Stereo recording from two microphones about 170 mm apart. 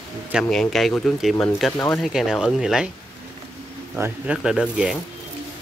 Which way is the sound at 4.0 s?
5° right (ahead or behind).